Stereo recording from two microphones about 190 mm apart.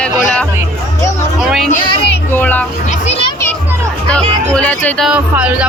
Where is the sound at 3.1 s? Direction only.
30° left (ahead or behind).